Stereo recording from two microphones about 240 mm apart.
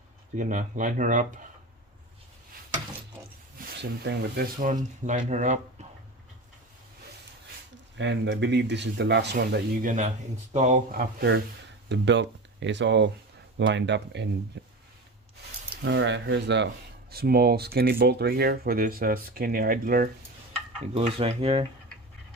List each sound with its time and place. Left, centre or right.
0.3 s speech: right
3.2 s a sound: centre
3.6 s speech: right
7.9 s speech: right
15.8 s speech: right
20.9 s speech: right